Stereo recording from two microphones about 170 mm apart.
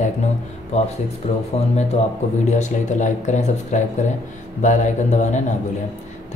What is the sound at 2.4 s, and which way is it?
Speech, 45° left (ahead or behind).